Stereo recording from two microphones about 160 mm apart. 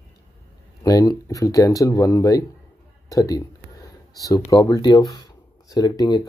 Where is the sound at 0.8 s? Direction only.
20° left (ahead or behind).